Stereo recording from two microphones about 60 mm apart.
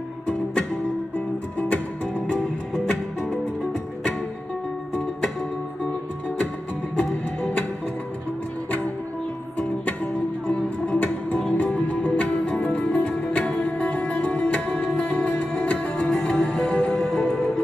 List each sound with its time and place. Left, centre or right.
1.6 s music: left
2.4 s music: centre
7.0 s music: centre
10.4 s music: left